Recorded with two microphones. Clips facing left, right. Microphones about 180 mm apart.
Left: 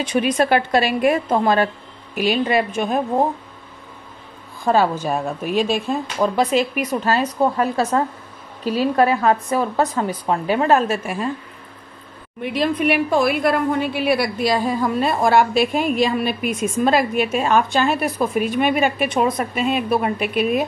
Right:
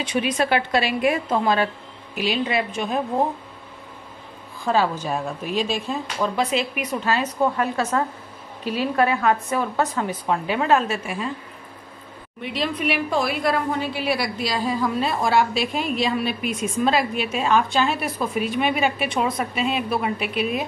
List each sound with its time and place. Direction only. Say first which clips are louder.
0.0 s a woman's voice: left 4 dB; 45° left (ahead or behind)
4.6 s a woman's voice: left 4 dB; 50° left (ahead or behind)
12.4 s a woman's voice: left 6 dB; 50° left (ahead or behind)